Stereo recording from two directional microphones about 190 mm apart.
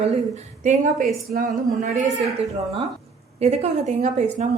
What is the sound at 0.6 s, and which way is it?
A woman's voice, 40° right (ahead or behind).